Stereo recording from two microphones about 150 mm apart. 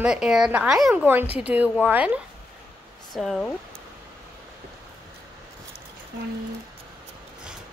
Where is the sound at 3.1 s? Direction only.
Centre (ahead or behind).